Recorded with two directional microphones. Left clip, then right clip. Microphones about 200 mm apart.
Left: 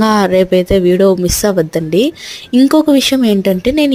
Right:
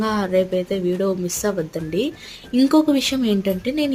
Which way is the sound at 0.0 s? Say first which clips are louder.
Left 9 dB; 40° left (ahead or behind).